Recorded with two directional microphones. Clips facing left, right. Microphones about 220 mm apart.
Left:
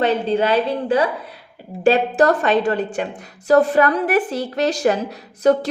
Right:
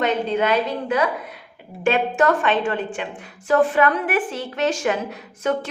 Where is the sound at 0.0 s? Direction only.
30° left (ahead or behind).